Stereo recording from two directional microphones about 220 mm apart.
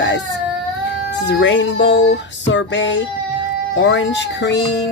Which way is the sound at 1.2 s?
55° left (ahead or behind).